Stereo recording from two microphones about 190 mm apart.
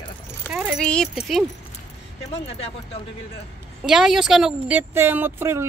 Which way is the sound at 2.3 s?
30° left (ahead or behind).